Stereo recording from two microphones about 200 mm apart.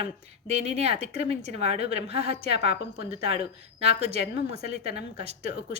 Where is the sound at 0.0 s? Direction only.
35° right (ahead or behind).